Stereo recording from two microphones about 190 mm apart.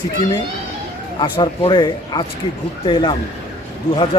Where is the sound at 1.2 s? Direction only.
25° left (ahead or behind).